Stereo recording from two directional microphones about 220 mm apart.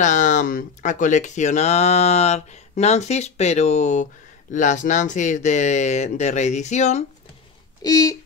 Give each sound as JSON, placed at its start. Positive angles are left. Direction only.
{"t": 0.0, "sound": "speech", "side_deg": 35}
{"t": 7.8, "sound": "speech", "side_deg": 15}